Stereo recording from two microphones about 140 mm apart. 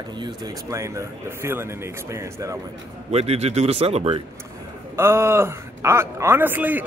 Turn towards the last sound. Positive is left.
turn(degrees=-15)  # may be behind; listen again after turning